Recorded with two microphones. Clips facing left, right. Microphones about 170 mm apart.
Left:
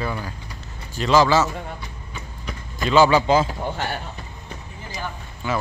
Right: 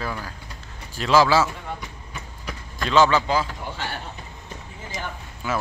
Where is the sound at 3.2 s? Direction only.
20° left (ahead or behind).